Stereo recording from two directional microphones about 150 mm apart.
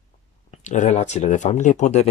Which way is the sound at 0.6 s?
55° left (ahead or behind).